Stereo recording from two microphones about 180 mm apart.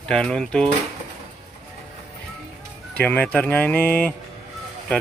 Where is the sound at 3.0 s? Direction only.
10° left (ahead or behind).